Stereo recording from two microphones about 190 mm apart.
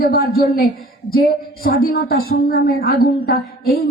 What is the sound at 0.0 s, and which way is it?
Speech, 55° left (ahead or behind).